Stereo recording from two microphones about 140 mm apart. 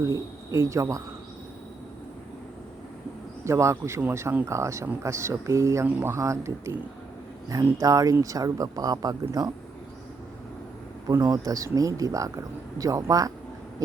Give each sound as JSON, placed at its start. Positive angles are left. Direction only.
{"t": 0.0, "sound": "speech", "side_deg": -25}
{"t": 3.4, "sound": "speech", "side_deg": -20}
{"t": 11.1, "sound": "speech", "side_deg": -25}